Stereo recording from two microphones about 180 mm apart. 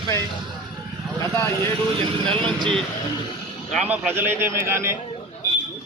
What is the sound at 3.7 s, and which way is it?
A man's voice, 5° right (ahead or behind).